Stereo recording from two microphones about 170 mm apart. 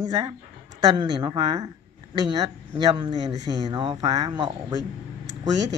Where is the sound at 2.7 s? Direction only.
30° right (ahead or behind).